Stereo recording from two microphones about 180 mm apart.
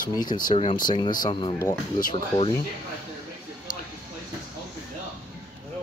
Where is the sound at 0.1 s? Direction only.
25° left (ahead or behind).